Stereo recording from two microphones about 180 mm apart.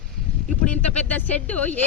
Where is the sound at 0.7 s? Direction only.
10° left (ahead or behind).